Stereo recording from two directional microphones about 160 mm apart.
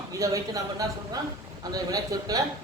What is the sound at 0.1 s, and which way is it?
A man's voice, 20° right (ahead or behind).